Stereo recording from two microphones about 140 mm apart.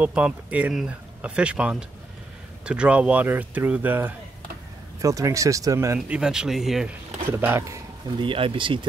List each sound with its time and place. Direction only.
0.0 s speech: 10° right (ahead or behind)
5.9 s speech: 5° right (ahead or behind)
8.2 s speech: 40° right (ahead or behind)